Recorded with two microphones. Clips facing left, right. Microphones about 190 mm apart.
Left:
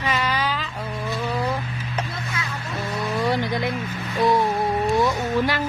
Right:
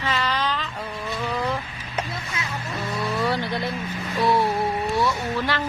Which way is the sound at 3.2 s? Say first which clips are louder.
Left 2 dB; 15° left (ahead or behind).